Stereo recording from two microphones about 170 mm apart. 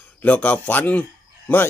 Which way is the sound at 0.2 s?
10° left (ahead or behind).